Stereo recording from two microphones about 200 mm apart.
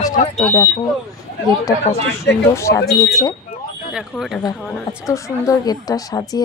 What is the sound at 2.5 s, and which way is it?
Speech, 15° left (ahead or behind).